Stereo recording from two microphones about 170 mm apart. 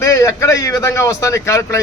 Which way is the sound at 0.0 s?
20° left (ahead or behind).